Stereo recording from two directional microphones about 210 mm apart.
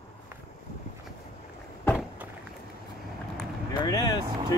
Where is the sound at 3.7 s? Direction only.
20° left (ahead or behind).